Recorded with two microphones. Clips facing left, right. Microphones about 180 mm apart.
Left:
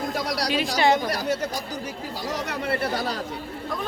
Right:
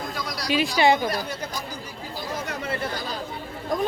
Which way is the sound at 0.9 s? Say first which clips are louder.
Left 2 dB; 80° left.